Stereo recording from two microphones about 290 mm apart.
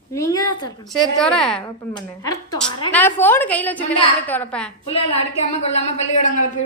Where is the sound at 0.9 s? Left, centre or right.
Centre.